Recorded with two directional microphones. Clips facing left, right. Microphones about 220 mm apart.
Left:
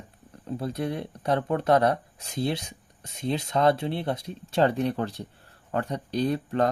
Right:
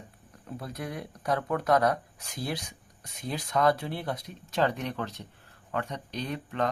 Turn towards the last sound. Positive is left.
turn(degrees=35)  # may be behind; listen again after turning